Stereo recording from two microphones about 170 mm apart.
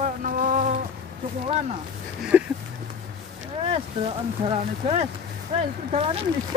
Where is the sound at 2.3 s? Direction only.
10° right (ahead or behind).